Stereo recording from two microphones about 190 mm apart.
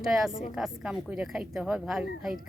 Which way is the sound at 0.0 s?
Centre (ahead or behind).